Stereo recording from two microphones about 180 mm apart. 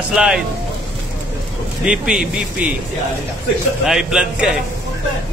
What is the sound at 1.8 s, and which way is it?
Speech, 5° right (ahead or behind).